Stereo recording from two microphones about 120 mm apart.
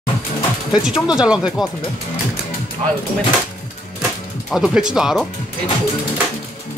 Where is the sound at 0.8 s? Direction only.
5° right (ahead or behind).